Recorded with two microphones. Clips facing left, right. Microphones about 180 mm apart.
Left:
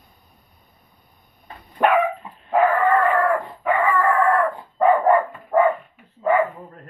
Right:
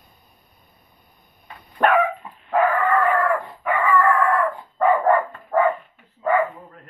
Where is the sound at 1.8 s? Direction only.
10° left (ahead or behind).